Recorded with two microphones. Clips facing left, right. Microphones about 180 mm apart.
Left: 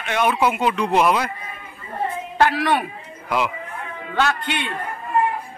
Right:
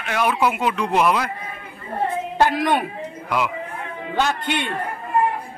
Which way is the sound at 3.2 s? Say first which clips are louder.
Left 1 dB; centre (ahead or behind).